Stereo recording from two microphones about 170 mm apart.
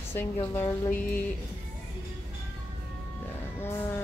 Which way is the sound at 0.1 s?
15° left (ahead or behind).